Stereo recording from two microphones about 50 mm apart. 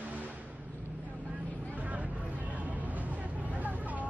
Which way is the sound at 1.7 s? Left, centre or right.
Right.